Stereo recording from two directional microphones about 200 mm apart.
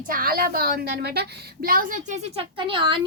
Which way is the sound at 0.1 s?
45° right (ahead or behind).